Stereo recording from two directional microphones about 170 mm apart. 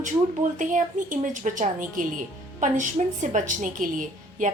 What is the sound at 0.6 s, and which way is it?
A woman's voice, 50° right (ahead or behind).